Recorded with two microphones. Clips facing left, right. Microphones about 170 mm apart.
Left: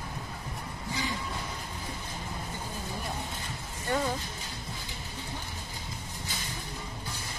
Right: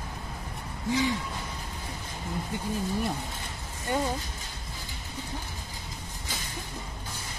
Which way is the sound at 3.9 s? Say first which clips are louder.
Right 1 dB; 15° right (ahead or behind).